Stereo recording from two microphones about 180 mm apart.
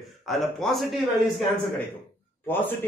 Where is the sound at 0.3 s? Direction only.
Centre (ahead or behind).